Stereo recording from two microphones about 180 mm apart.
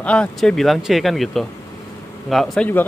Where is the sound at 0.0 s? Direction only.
5° left (ahead or behind).